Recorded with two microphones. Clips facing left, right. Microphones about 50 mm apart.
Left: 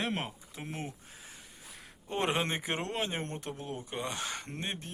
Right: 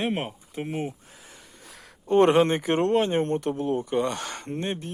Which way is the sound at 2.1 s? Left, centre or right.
Right.